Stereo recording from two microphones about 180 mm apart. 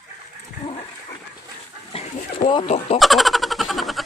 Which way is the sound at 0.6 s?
30° left (ahead or behind).